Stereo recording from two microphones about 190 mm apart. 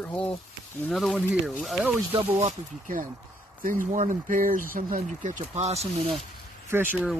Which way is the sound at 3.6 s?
45° right (ahead or behind).